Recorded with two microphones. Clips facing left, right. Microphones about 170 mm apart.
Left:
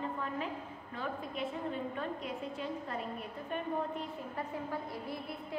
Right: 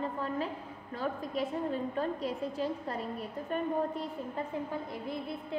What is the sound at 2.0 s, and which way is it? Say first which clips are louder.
Speech: right 5 dB; 35° right (ahead or behind).